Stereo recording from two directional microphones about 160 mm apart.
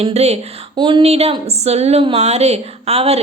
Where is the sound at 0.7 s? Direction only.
30° right (ahead or behind).